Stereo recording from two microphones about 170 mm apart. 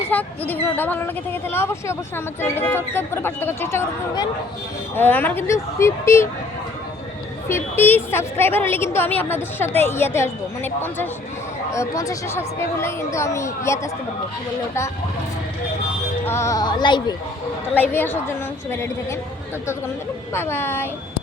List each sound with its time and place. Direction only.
0.1 s a woman's voice: 10° left (ahead or behind)
7.4 s a woman's voice: 15° left (ahead or behind)
16.2 s speech: 15° left (ahead or behind)
17.7 s a woman's voice: 10° left (ahead or behind)
20.3 s a woman's voice: 15° left (ahead or behind)